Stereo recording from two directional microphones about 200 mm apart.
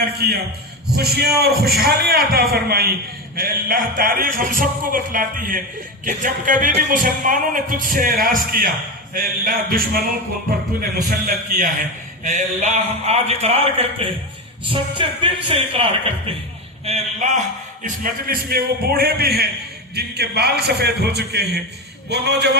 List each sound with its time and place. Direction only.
0.0 s a man's voice: 50° right (ahead or behind); by 17.3 s 35° right (ahead or behind)
17.8 s a man's voice: 45° right (ahead or behind)